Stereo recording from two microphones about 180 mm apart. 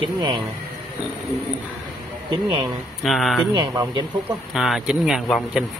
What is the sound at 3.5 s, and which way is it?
Speech, 25° right (ahead or behind).